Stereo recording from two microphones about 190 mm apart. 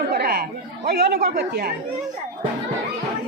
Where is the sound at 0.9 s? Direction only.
55° right (ahead or behind).